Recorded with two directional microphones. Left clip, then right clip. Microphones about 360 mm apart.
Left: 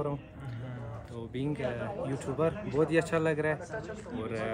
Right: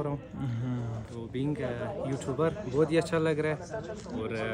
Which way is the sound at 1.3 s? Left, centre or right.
Centre.